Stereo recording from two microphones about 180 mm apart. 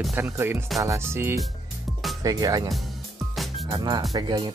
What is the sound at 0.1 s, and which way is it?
Speech, 15° right (ahead or behind).